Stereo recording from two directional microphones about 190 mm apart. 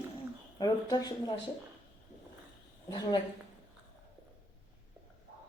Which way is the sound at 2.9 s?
25° left (ahead or behind).